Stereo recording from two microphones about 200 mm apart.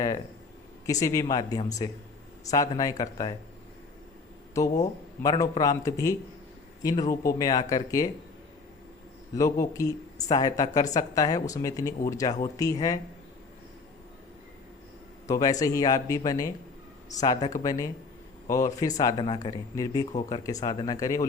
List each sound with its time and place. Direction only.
0.9 s speech: 15° left (ahead or behind)
4.6 s speech: 15° left (ahead or behind)
9.3 s speech: 15° left (ahead or behind)
15.3 s speech: 15° left (ahead or behind)